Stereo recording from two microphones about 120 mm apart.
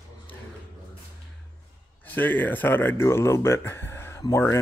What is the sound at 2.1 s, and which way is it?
Speech, 15° left (ahead or behind).